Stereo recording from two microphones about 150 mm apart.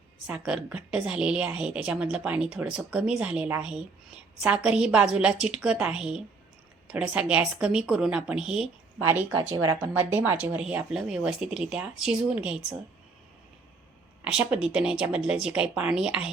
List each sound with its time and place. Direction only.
0.3 s a woman's voice: 5° right (ahead or behind)
9.5 s speech: 25° right (ahead or behind)
9.8 s a woman's voice: 15° right (ahead or behind)
14.3 s a woman's voice: 5° right (ahead or behind)